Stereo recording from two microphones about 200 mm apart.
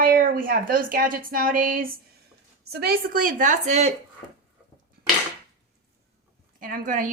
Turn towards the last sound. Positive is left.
turn(degrees=-40)  # may be behind; listen again after turning